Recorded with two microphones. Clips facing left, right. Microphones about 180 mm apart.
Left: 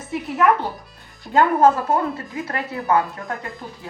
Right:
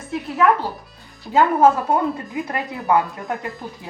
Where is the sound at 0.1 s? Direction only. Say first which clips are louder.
Even; centre (ahead or behind); by 3.3 s 15° right (ahead or behind).